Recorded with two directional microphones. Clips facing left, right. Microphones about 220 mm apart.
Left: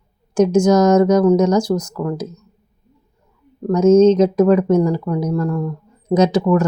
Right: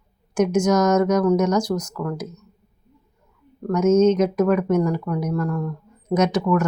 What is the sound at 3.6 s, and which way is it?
Speech, 30° left (ahead or behind).